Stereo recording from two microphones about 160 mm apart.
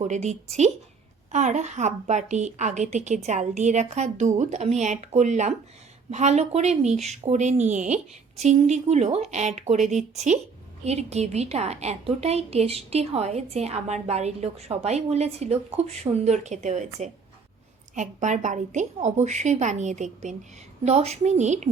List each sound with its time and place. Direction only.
0.0 s a woman's voice: 45° right (ahead or behind)